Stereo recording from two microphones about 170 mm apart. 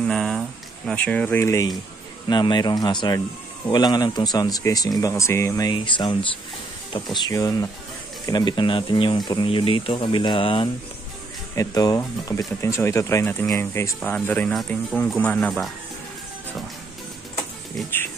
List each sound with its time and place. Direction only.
0.0 s a sound: 5° left (ahead or behind)
0.8 s speech: 5° left (ahead or behind); by 6.1 s 25° left (ahead or behind)
7.2 s speech: 20° left (ahead or behind)
11.5 s speech: 20° left (ahead or behind); by 15.7 s 5° left (ahead or behind)